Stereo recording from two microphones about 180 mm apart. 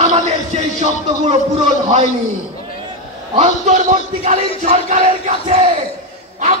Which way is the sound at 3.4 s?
40° right (ahead or behind).